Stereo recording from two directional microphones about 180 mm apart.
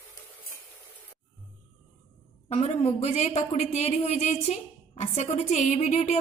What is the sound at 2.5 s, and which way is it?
Speech, 35° left (ahead or behind).